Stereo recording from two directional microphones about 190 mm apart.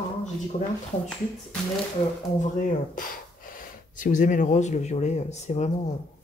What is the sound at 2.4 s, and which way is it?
Speech, 45° left (ahead or behind).